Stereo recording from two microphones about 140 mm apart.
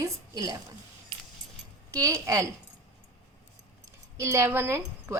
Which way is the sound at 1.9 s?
25° right (ahead or behind).